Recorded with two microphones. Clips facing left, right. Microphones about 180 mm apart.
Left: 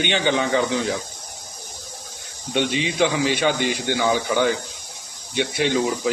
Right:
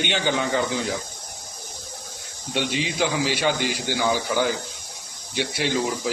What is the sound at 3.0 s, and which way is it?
Speech, 5° right (ahead or behind).